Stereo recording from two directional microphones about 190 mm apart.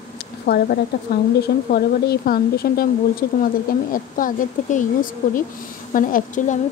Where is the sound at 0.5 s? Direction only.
55° left (ahead or behind).